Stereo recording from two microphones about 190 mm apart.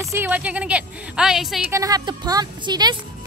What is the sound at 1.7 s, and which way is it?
Speech, 15° right (ahead or behind).